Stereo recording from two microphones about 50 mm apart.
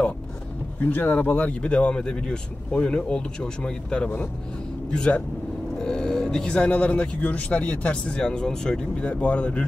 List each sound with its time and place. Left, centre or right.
0.8 s speech: left
1.6 s speech: left
9.1 s speech: left